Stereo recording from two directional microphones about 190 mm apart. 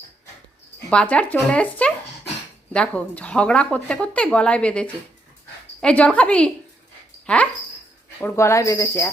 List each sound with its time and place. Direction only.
0.9 s speech: 5° left (ahead or behind)
8.2 s speech: 15° left (ahead or behind)